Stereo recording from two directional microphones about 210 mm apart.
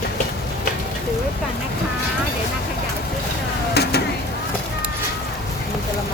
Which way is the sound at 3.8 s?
50° left (ahead or behind).